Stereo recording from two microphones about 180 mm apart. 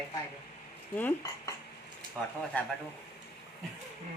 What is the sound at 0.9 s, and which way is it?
Dishes, 10° left (ahead or behind).